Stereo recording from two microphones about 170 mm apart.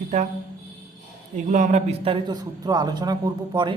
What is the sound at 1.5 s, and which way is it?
A man's voice, 45° right (ahead or behind).